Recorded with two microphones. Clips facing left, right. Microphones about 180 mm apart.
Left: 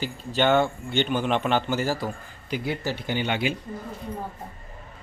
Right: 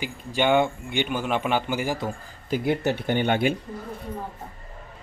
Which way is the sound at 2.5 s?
55° right (ahead or behind).